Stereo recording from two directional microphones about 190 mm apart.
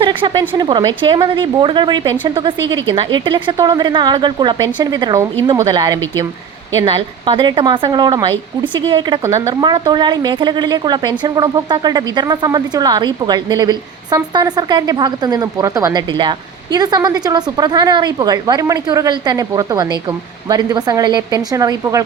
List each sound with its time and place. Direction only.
0.0 s a woman's voice: 25° right (ahead or behind)